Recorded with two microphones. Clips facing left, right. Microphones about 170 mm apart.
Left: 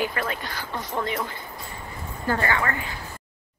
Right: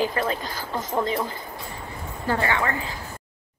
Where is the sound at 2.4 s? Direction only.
15° right (ahead or behind).